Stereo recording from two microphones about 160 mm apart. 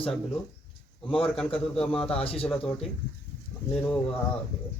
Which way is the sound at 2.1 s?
35° left (ahead or behind).